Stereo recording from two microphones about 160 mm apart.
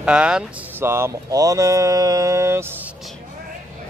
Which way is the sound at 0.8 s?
15° right (ahead or behind).